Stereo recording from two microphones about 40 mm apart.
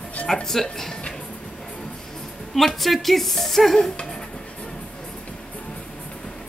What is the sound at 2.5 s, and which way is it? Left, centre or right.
Speech, centre.